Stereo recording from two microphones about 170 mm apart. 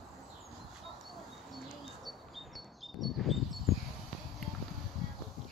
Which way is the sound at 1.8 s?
Centre (ahead or behind).